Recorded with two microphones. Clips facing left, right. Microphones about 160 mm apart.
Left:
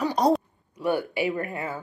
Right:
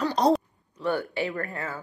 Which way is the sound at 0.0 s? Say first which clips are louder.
Even; 10° left (ahead or behind).